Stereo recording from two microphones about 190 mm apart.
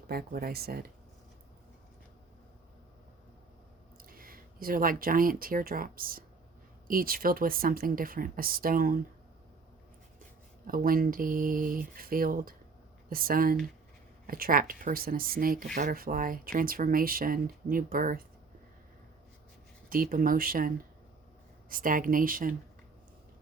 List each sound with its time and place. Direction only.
0.1 s speech: 55° right (ahead or behind)
3.9 s speech: 50° right (ahead or behind)
10.7 s speech: 50° right (ahead or behind)
19.9 s speech: 50° right (ahead or behind)